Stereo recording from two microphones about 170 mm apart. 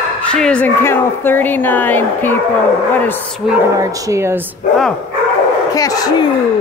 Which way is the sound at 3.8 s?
15° right (ahead or behind).